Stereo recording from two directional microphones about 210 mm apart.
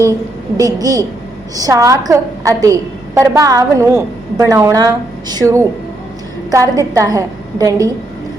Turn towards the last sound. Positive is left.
turn(degrees=-15)  # may be behind; listen again after turning